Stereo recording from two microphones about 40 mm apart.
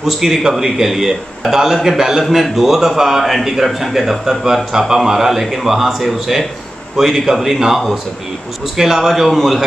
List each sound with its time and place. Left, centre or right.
0.0 s a man's voice: centre